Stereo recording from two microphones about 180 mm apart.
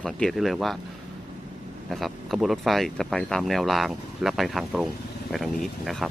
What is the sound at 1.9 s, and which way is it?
Speech, centre (ahead or behind).